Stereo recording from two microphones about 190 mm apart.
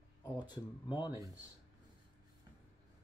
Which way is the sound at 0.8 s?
20° left (ahead or behind).